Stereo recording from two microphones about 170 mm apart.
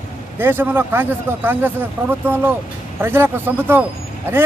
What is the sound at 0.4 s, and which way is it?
Speech, 15° right (ahead or behind).